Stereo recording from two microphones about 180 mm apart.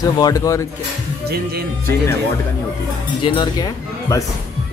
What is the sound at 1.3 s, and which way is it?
Speech, 60° right (ahead or behind).